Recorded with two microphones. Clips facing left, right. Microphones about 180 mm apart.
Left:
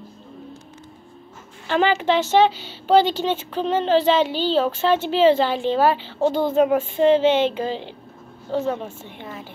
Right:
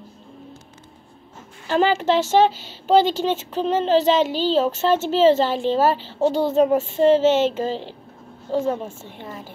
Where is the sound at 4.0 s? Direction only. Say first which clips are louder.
Even; 40° right (ahead or behind).